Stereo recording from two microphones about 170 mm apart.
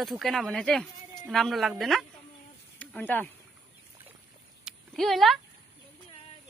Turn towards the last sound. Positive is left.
turn(degrees=0)  # may be behind; listen again after turning